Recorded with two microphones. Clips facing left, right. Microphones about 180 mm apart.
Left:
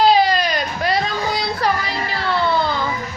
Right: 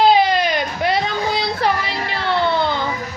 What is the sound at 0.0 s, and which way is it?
Baby cry, 20° right (ahead or behind).